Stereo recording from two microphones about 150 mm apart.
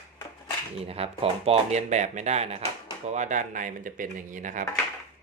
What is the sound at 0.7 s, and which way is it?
Speech, 40° right (ahead or behind).